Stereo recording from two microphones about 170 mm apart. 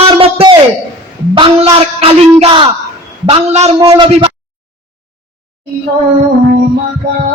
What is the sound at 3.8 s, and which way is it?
Speech, 20° right (ahead or behind).